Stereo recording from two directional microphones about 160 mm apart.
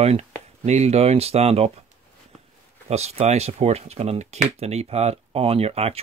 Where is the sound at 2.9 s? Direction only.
40° right (ahead or behind).